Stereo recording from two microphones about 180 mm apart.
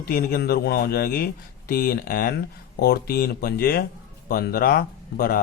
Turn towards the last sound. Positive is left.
turn(degrees=55)  # may be behind; listen again after turning